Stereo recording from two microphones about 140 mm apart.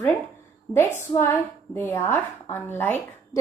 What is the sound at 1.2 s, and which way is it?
A woman's voice, 15° left (ahead or behind).